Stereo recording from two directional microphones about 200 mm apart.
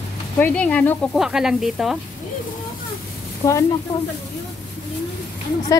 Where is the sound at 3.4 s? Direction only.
15° left (ahead or behind).